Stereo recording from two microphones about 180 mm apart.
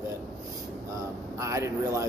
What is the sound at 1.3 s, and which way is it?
Speech, 15° right (ahead or behind).